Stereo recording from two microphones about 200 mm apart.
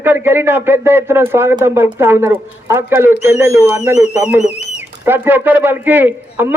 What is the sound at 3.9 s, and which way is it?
Speech, 35° left (ahead or behind).